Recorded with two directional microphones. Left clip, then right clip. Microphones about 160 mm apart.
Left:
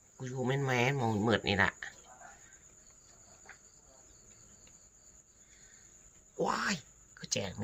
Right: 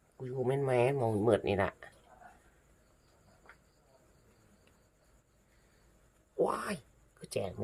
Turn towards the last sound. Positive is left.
turn(degrees=-10)  # may be behind; listen again after turning